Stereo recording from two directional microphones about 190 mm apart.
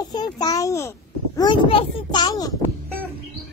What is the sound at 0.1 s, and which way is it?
A child's voice, 20° left (ahead or behind).